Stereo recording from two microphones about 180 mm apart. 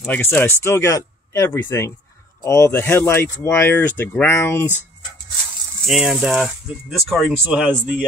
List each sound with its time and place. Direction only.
0.0 s speech: 10° left (ahead or behind)
5.9 s speech: centre (ahead or behind)
7.3 s speech: 10° right (ahead or behind)